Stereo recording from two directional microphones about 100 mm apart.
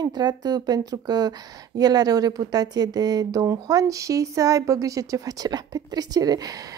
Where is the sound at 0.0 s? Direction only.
45° right (ahead or behind).